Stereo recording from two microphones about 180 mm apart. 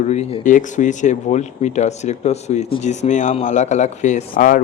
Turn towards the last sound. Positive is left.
turn(degrees=50)  # may be behind; listen again after turning